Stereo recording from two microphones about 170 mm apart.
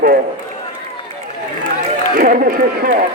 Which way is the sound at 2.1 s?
55° right (ahead or behind).